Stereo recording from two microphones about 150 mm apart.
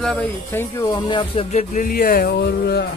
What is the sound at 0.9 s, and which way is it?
Speech, 30° left (ahead or behind).